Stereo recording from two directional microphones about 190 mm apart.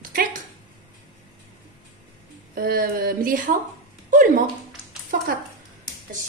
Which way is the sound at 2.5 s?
50° right (ahead or behind).